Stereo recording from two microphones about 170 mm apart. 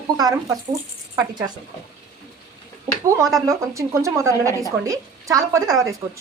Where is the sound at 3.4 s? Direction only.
20° right (ahead or behind).